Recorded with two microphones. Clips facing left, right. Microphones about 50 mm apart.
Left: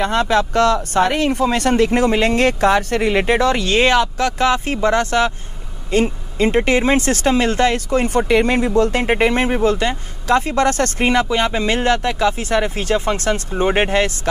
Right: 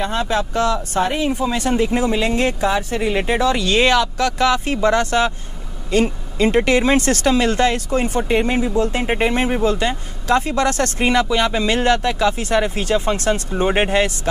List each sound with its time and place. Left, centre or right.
0.0 s speech: left